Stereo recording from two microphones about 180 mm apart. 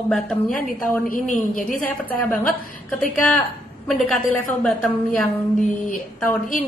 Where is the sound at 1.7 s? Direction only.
10° left (ahead or behind).